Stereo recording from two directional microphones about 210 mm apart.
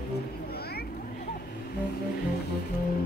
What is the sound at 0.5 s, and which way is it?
Vehicle, 50° left (ahead or behind).